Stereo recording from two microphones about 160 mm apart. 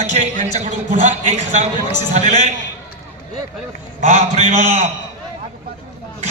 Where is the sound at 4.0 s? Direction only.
40° right (ahead or behind).